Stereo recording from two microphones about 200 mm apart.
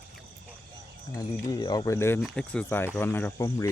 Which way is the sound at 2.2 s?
Centre (ahead or behind).